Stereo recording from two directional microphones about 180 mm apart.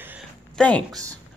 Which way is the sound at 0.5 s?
5° left (ahead or behind).